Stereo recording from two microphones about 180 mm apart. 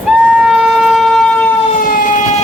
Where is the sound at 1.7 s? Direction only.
50° left (ahead or behind).